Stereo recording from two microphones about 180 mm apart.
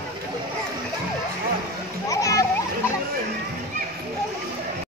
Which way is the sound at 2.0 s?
20° left (ahead or behind).